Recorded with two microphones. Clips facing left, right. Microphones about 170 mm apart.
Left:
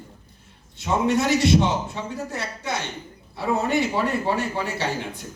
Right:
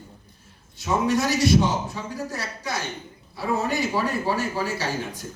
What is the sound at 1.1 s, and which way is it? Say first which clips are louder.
A man's voice: left 1 dB; 25° left (ahead or behind).